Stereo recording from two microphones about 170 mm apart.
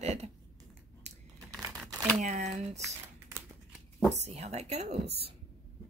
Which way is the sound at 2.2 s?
45° right (ahead or behind).